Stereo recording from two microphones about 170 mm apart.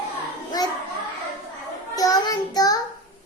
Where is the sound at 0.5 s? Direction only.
25° left (ahead or behind).